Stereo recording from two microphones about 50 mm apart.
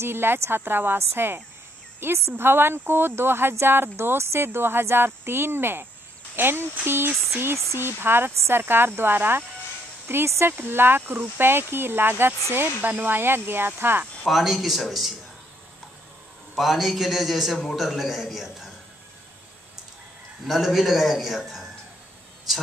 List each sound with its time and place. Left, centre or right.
0.0 s speech: right
14.2 s a man's voice: centre
16.5 s a man's voice: centre
20.4 s a man's voice: centre